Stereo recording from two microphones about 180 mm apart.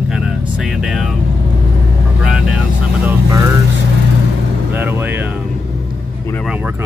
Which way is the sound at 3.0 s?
15° right (ahead or behind).